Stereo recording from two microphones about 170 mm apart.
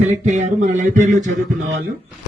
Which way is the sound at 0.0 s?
45° right (ahead or behind).